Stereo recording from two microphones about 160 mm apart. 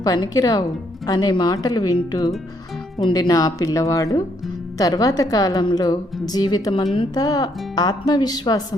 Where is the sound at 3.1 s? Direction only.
25° left (ahead or behind).